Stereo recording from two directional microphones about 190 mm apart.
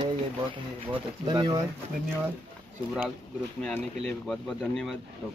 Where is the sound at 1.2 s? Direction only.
25° right (ahead or behind).